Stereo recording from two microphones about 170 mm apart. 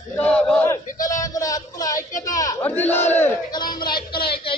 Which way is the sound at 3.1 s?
10° left (ahead or behind).